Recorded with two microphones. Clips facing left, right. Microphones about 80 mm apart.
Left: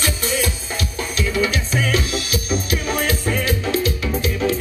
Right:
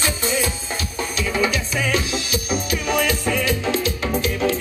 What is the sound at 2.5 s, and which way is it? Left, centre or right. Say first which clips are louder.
Music: right 1 dB; left.